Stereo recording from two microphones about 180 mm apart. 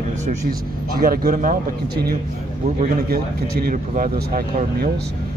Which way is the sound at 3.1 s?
55° right (ahead or behind).